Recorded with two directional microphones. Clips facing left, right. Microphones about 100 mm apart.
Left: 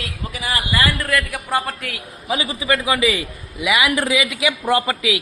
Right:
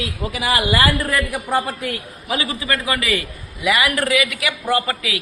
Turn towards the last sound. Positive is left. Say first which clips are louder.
# left 2 dB
turn(degrees=15)  # may be behind; listen again after turning